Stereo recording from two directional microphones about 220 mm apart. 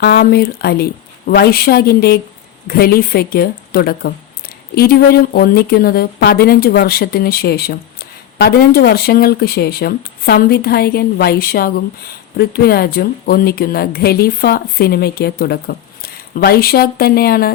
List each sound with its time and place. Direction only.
0.0 s speech: 45° left (ahead or behind)